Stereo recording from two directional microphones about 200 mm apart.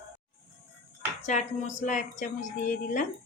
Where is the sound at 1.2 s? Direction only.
35° left (ahead or behind).